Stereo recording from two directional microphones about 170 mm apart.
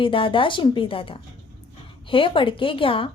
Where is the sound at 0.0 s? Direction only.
30° left (ahead or behind).